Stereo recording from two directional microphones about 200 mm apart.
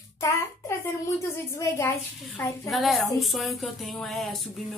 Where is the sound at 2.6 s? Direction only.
Centre (ahead or behind).